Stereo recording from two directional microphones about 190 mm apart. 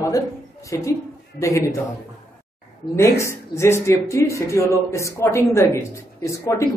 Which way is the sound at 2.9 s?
15° left (ahead or behind).